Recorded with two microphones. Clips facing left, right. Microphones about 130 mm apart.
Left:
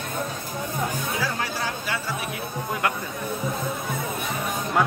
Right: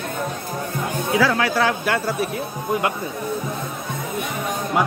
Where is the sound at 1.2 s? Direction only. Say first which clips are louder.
Right 13 dB; 90° right; by 2.1 s 60° right (ahead or behind).